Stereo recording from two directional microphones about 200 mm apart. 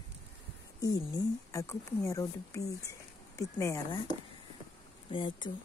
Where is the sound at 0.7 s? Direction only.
20° left (ahead or behind).